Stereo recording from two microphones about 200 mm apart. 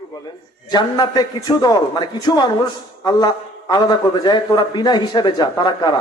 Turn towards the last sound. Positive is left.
turn(degrees=20)  # may be behind; listen again after turning